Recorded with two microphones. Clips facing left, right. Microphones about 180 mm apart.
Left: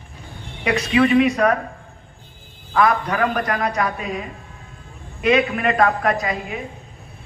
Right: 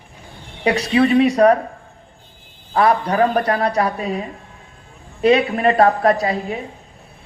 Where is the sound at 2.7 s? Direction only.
35° right (ahead or behind).